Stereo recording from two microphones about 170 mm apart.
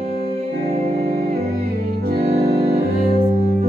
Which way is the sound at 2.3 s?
70° right (ahead or behind).